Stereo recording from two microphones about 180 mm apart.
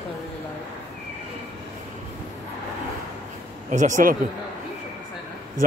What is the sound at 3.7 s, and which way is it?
Speech, 45° right (ahead or behind).